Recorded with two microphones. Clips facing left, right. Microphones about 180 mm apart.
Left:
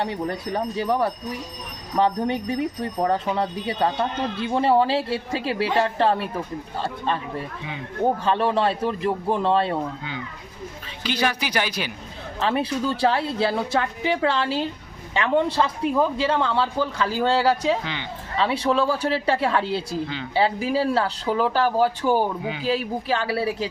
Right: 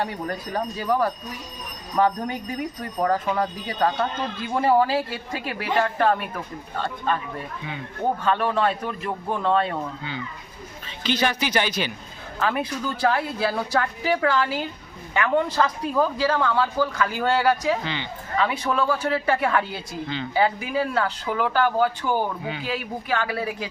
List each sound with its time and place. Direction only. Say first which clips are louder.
0.0 s speech: left 2 dB; 25° left (ahead or behind)
11.0 s speech: right 1 dB; 10° left (ahead or behind)
12.4 s speech: left 2 dB; 30° left (ahead or behind)